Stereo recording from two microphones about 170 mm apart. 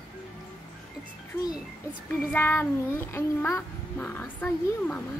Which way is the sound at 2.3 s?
10° left (ahead or behind).